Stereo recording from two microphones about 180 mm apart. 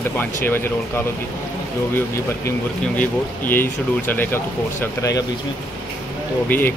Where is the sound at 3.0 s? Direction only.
10° left (ahead or behind).